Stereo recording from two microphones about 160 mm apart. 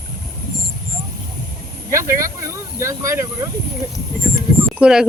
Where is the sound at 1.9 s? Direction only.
20° right (ahead or behind).